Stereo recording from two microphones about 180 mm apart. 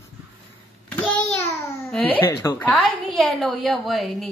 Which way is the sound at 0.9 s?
10° left (ahead or behind).